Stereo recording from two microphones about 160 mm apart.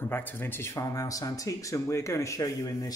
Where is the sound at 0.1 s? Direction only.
15° left (ahead or behind).